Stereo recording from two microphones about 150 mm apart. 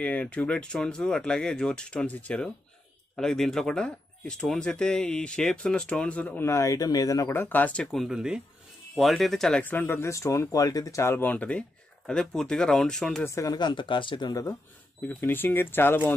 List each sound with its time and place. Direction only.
0.0 s speech: 10° left (ahead or behind)
13.2 s speech: 20° left (ahead or behind)